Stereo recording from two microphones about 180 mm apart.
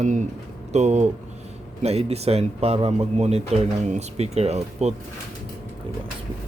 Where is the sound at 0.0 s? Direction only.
40° right (ahead or behind).